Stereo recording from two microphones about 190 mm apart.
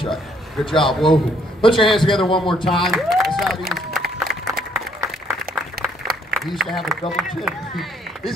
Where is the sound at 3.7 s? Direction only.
Centre (ahead or behind).